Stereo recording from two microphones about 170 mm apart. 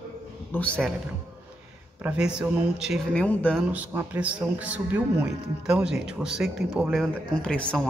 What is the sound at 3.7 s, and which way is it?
Speech, 10° right (ahead or behind).